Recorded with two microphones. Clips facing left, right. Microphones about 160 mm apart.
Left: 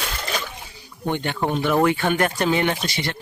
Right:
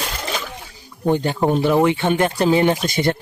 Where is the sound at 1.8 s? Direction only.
25° right (ahead or behind).